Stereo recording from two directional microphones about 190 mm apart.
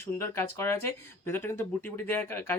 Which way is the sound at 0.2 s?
15° left (ahead or behind).